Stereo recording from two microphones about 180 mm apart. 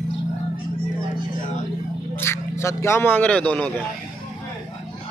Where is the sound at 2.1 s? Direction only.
15° left (ahead or behind).